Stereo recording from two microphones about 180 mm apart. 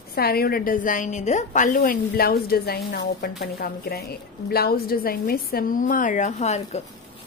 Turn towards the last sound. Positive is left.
turn(degrees=35)  # may be behind; listen again after turning